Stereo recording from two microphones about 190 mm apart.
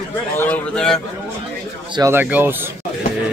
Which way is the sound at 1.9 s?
15° right (ahead or behind).